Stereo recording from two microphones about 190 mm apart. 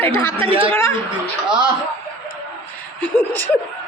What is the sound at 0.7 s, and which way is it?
Speech, 15° left (ahead or behind).